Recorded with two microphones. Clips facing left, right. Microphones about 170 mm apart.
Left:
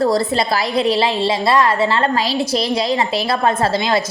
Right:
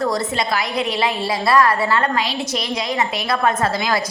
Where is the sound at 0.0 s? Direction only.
35° left (ahead or behind).